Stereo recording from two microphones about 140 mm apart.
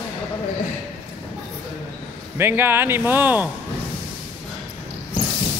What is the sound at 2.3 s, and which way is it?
Speech, 15° right (ahead or behind).